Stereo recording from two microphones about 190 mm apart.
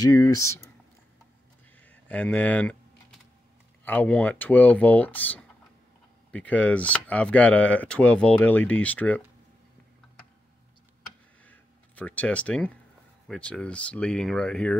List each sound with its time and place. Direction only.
0.0 s speech: 20° left (ahead or behind)
1.8 s speech: 10° left (ahead or behind)
3.8 s speech: 10° left (ahead or behind)
11.4 s a sound: 10° left (ahead or behind)
13.3 s speech: 5° left (ahead or behind)